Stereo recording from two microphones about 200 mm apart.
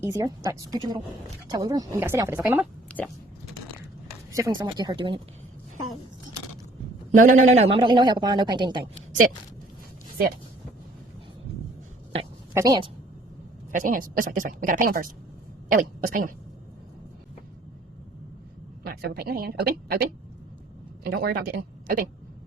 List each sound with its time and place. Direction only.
0.0 s speech: 15° right (ahead or behind)
4.3 s speech: 15° right (ahead or behind)
7.2 s a man's voice: 40° right (ahead or behind)
7.5 s speech: 30° right (ahead or behind)
9.0 s a sound: 45° right (ahead or behind)
12.5 s speech: 20° right (ahead or behind)
13.7 s speech: 40° right (ahead or behind)
18.8 s speech: 50° right (ahead or behind)
21.2 s speech: 50° right (ahead or behind)